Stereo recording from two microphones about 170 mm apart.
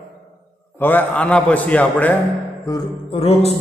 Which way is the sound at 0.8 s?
10° left (ahead or behind).